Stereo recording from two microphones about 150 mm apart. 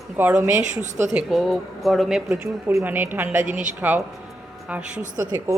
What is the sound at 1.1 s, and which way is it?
A woman's voice, 5° right (ahead or behind).